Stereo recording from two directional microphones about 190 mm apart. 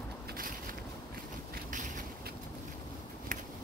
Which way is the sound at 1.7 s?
40° right (ahead or behind).